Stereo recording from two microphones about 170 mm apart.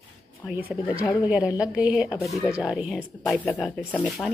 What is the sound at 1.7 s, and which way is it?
A woman's voice, 10° right (ahead or behind).